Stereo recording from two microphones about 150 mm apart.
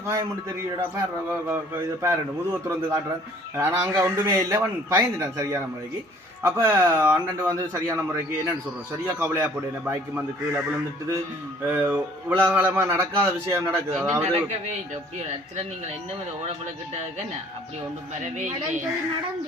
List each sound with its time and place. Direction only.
0.0 s a man's voice: 20° right (ahead or behind)
13.9 s a man's voice: 5° right (ahead or behind)
18.3 s speech: 50° right (ahead or behind)